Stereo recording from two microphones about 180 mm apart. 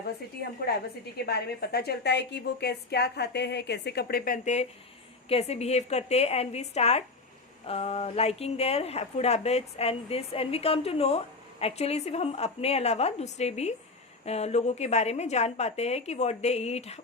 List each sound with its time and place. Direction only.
1.2 s a woman's voice: 60° left (ahead or behind); by 17.0 s 35° left (ahead or behind)